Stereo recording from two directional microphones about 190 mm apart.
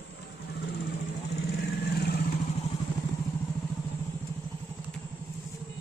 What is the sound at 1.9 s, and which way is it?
Vehicle, 60° left (ahead or behind).